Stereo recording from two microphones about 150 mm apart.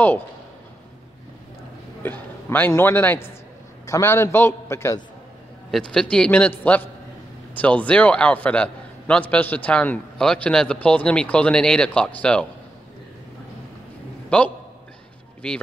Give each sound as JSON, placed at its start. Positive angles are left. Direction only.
{"t": 2.0, "sound": "a man's voice", "side_deg": 10}
{"t": 5.7, "sound": "a man's voice", "side_deg": 5}
{"t": 14.3, "sound": "a man's voice", "side_deg": 10}